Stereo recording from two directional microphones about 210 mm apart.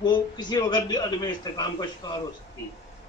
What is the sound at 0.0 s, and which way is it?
A man's voice, 20° left (ahead or behind).